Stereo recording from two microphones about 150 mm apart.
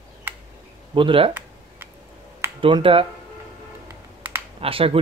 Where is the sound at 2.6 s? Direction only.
35° right (ahead or behind).